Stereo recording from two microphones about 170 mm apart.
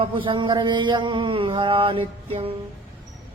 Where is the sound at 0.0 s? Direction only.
30° right (ahead or behind).